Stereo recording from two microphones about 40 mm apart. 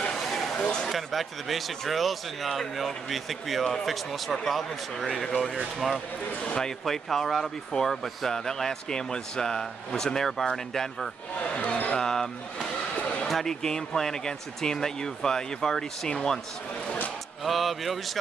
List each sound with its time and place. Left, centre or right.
0.0 s a sound: centre
0.3 s a sound: centre
0.6 s speech: centre
0.8 s speech: centre
6.8 s speech: centre
11.3 s speech: left
12.0 s speech: centre
12.9 s a sound: left
13.3 s speech: centre
17.4 s speech: centre